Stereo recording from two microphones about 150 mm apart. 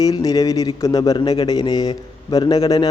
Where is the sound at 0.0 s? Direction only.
25° left (ahead or behind).